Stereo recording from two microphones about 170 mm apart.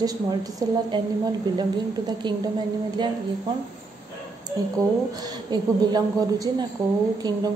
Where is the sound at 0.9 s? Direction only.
25° right (ahead or behind).